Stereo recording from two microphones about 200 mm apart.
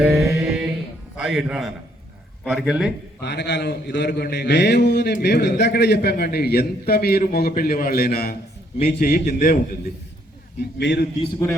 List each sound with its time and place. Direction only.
0.0 s mantra: 5° right (ahead or behind)
1.1 s a man's voice: 5° right (ahead or behind)
3.2 s a man's voice: 60° left (ahead or behind)
10.6 s a man's voice: 60° left (ahead or behind)